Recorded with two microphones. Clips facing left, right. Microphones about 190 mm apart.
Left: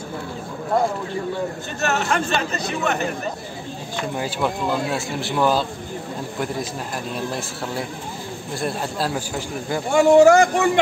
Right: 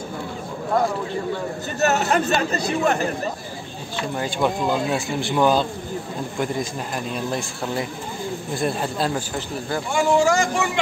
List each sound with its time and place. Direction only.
1.8 s speech: 40° right (ahead or behind)
4.2 s speech: centre (ahead or behind)
8.5 s speech: centre (ahead or behind)
9.9 s speech: 60° left (ahead or behind)